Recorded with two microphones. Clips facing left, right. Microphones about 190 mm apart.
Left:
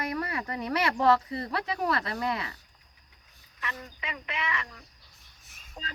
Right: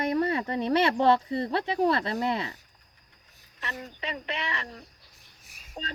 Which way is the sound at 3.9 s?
35° right (ahead or behind).